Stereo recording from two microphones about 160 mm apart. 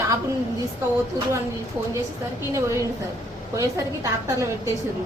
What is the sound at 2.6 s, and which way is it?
A woman's voice, 15° right (ahead or behind).